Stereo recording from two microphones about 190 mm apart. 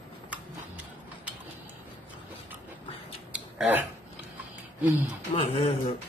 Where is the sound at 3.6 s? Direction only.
10° right (ahead or behind).